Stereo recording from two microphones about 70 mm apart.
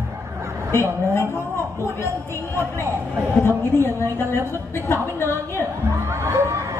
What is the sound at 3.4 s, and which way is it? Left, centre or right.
Speech, left.